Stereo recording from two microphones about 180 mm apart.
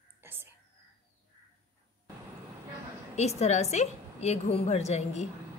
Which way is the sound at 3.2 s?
35° left (ahead or behind).